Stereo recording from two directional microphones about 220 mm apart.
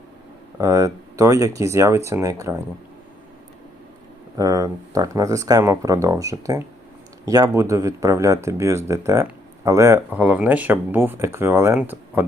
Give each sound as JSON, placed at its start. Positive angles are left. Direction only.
{"t": 0.6, "sound": "speech", "side_deg": -15}
{"t": 4.4, "sound": "speech", "side_deg": -15}